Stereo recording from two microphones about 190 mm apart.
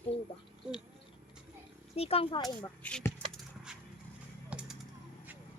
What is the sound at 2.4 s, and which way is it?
Speech, 5° left (ahead or behind).